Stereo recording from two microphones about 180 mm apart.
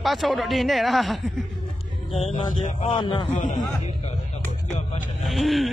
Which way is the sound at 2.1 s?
30° left (ahead or behind).